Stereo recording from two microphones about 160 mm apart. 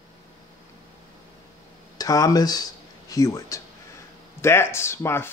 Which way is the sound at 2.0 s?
20° left (ahead or behind).